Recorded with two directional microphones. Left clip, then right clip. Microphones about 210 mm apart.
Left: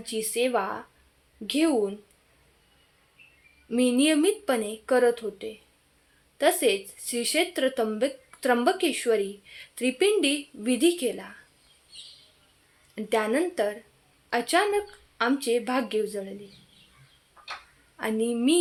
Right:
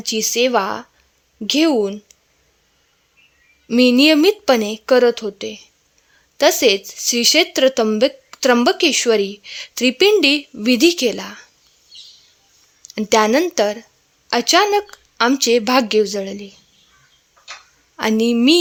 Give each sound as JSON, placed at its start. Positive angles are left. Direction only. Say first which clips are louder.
{"t": 0.0, "sound": "speech", "louder": "right 10 dB", "side_deg": -40}
{"t": 3.7, "sound": "speech", "louder": "right 11 dB", "side_deg": -45}
{"t": 13.0, "sound": "speech", "louder": "right 11 dB", "side_deg": -45}
{"t": 17.9, "sound": "speech", "louder": "right 10 dB", "side_deg": -45}